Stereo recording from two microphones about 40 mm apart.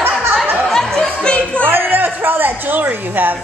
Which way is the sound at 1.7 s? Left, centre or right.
Right.